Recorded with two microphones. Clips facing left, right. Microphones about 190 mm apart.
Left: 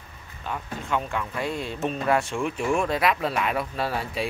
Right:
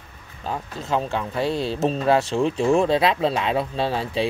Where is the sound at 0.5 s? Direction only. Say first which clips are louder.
Right 3 dB; 30° right (ahead or behind).